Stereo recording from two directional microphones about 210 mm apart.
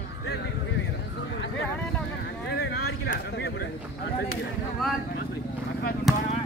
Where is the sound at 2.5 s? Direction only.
50° left (ahead or behind).